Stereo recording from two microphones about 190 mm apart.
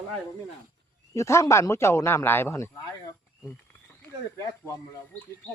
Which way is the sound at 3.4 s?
10° left (ahead or behind).